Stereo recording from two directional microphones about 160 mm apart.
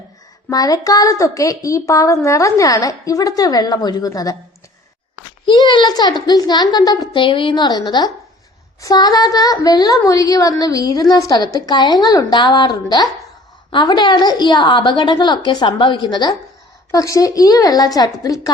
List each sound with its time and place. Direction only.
0.5 s a woman's voice: 25° left (ahead or behind)
5.5 s a woman's voice: 25° left (ahead or behind)